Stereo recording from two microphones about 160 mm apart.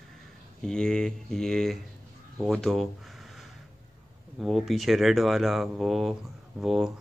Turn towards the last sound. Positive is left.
turn(degrees=0)  # may be behind; listen again after turning